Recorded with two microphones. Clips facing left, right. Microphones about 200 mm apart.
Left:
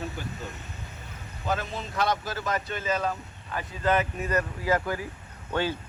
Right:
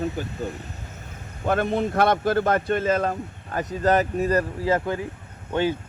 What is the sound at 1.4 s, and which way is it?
Speech, 55° right (ahead or behind).